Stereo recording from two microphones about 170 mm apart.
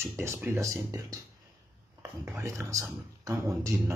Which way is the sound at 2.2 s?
15° right (ahead or behind).